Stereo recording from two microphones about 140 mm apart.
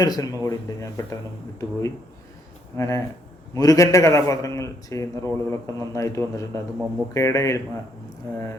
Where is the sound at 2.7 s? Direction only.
20° left (ahead or behind).